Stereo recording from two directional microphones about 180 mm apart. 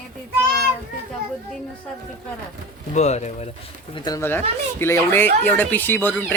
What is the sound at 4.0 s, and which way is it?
Speech, 20° left (ahead or behind).